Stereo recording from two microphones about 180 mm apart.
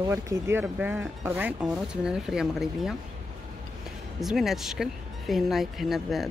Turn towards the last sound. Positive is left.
turn(degrees=0)  # may be behind; listen again after turning